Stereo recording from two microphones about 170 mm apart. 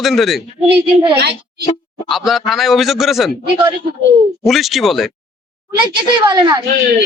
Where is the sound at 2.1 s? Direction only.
Centre (ahead or behind).